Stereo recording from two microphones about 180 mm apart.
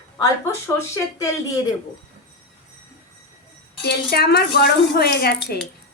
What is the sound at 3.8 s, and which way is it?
A woman's voice, 60° left (ahead or behind).